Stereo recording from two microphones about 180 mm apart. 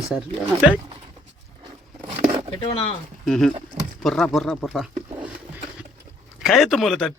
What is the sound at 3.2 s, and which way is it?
Speech, centre (ahead or behind).